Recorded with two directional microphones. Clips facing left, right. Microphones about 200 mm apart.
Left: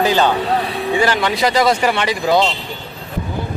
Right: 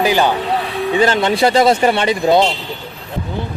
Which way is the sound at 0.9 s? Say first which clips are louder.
Right 3 dB; 25° right (ahead or behind).